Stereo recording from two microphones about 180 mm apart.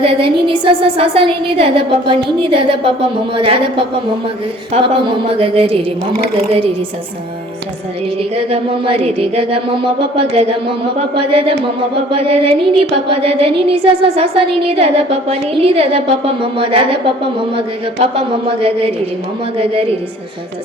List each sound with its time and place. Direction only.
0.0 s a woman's voice: 30° right (ahead or behind)
4.7 s music: 30° right (ahead or behind)
8.2 s music: 30° right (ahead or behind)
10.9 s music: 30° right (ahead or behind)
18.0 s music: 30° right (ahead or behind)